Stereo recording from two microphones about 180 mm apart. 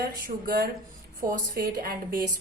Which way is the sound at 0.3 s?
55° right (ahead or behind).